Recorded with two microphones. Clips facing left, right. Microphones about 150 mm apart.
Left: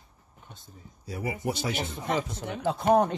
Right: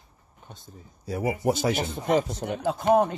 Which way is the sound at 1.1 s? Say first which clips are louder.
Right 6 dB; 45° right (ahead or behind).